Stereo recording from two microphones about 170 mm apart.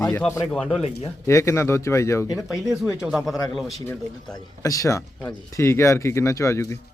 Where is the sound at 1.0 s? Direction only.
15° left (ahead or behind).